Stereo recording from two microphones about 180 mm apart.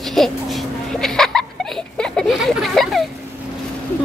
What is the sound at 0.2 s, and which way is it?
Vehicle, centre (ahead or behind).